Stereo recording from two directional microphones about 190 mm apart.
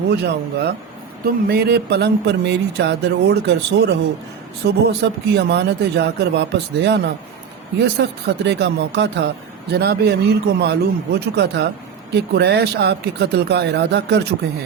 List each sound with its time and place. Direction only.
0.1 s speech: 60° right (ahead or behind)